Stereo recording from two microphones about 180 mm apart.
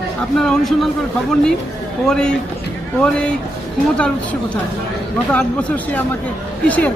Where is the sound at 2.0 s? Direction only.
5° left (ahead or behind).